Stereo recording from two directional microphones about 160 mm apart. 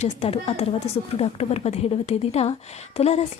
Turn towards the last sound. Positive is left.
turn(degrees=40)  # may be behind; listen again after turning